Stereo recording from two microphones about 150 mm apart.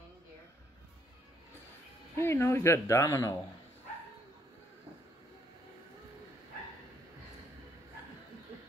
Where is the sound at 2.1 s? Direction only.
15° left (ahead or behind).